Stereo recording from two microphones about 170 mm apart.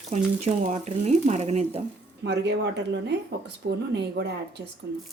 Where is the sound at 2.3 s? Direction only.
90° right.